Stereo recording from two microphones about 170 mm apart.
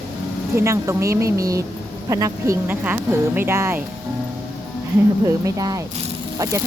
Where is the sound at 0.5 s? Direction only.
15° right (ahead or behind).